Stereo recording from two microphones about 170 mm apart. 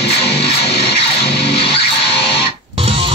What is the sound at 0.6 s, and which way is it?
Music, 35° left (ahead or behind).